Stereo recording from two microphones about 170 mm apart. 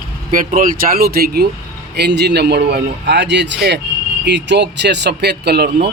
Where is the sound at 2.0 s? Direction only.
80° right.